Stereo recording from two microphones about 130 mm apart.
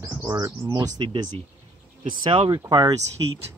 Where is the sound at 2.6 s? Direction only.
25° right (ahead or behind).